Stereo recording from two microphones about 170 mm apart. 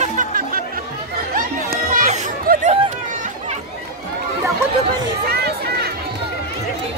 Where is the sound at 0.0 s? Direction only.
50° right (ahead or behind).